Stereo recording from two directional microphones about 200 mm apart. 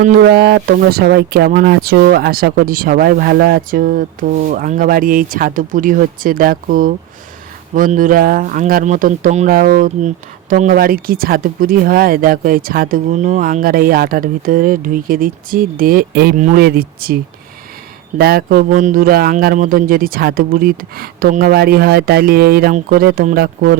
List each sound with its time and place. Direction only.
0.0 s speech: 50° right (ahead or behind)
18.2 s speech: 50° right (ahead or behind)